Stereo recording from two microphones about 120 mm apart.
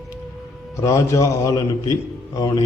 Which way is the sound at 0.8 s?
25° left (ahead or behind).